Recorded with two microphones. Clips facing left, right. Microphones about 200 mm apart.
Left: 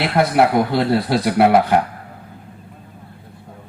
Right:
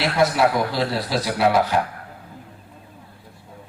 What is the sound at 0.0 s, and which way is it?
A man's voice, 55° left (ahead or behind).